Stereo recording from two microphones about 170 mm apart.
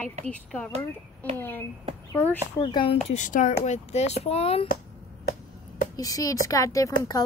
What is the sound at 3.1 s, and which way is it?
Speech, 50° left (ahead or behind).